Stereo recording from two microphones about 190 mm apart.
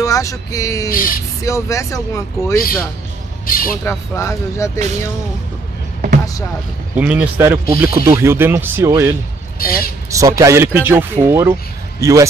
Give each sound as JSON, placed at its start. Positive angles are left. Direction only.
{"t": 0.0, "sound": "speech", "side_deg": 15}
{"t": 0.8, "sound": "speech", "side_deg": 50}
{"t": 1.4, "sound": "speech", "side_deg": 15}
{"t": 3.4, "sound": "speech", "side_deg": 50}
{"t": 4.1, "sound": "speech", "side_deg": 15}
{"t": 4.7, "sound": "speech", "side_deg": -35}
{"t": 7.0, "sound": "speech", "side_deg": -5}
{"t": 9.6, "sound": "speech", "side_deg": 50}
{"t": 10.1, "sound": "speech", "side_deg": -15}